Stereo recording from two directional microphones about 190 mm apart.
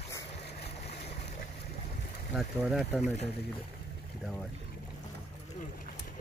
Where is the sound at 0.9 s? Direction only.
35° left (ahead or behind).